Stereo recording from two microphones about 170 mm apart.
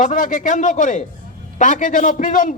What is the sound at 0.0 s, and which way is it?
A man's voice, 50° left (ahead or behind).